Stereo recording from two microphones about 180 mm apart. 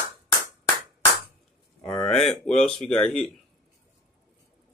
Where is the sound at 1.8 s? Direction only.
20° left (ahead or behind).